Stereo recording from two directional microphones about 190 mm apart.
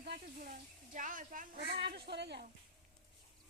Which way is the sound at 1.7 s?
60° right (ahead or behind).